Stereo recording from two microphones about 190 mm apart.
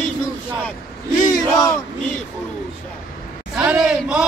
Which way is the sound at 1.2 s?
20° left (ahead or behind).